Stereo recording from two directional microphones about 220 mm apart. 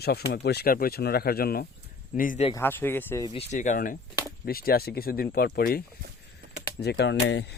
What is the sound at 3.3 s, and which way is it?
Speech, 30° left (ahead or behind).